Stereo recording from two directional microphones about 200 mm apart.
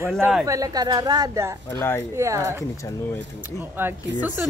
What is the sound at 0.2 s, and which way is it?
Speech, 5° right (ahead or behind).